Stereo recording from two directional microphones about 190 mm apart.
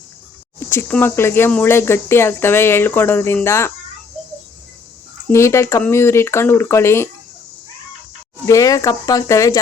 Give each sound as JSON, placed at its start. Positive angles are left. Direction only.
{"t": 0.7, "sound": "speech", "side_deg": 10}
{"t": 5.3, "sound": "speech", "side_deg": 15}
{"t": 8.4, "sound": "speech", "side_deg": 15}